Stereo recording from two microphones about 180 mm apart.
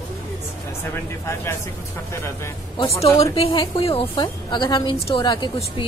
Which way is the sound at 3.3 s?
30° left (ahead or behind).